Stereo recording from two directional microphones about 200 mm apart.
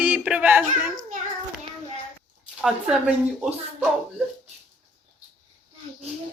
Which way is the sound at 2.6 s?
5° right (ahead or behind).